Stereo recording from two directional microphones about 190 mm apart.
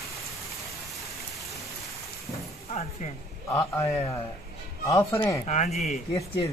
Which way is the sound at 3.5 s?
20° left (ahead or behind).